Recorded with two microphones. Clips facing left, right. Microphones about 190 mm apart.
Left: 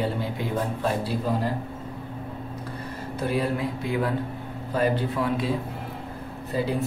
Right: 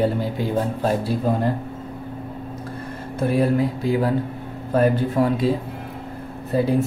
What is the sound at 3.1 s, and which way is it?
Speech, 50° right (ahead or behind).